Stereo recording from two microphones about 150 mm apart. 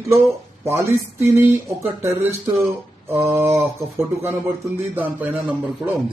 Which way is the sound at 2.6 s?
15° right (ahead or behind).